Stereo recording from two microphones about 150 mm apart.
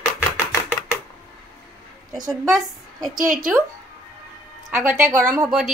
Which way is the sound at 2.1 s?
25° right (ahead or behind).